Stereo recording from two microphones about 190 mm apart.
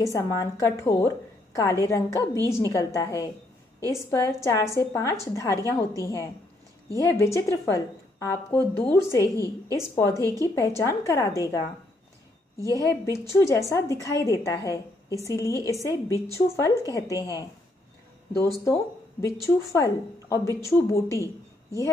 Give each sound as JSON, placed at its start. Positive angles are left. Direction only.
{"t": 0.0, "sound": "a woman's voice", "side_deg": 15}
{"t": 12.7, "sound": "a woman's voice", "side_deg": 15}
{"t": 19.4, "sound": "a woman's voice", "side_deg": 15}